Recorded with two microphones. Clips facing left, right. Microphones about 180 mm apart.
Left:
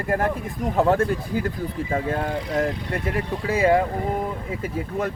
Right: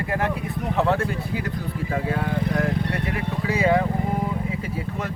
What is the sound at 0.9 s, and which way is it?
Speech, 45° left (ahead or behind).